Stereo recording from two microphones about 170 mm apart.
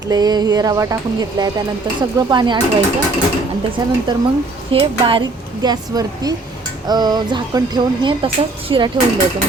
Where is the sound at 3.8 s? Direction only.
25° right (ahead or behind).